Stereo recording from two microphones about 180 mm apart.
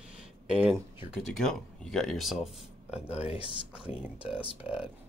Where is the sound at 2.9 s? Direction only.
35° left (ahead or behind).